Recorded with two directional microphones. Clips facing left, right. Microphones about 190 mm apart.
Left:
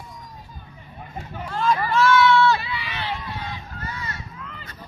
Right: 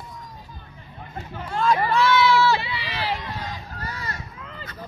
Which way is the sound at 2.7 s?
35° right (ahead or behind).